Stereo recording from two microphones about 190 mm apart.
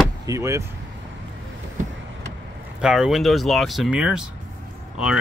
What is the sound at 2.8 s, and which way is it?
Speech, 5° right (ahead or behind).